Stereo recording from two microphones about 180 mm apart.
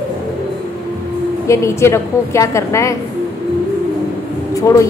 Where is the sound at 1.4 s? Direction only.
15° left (ahead or behind).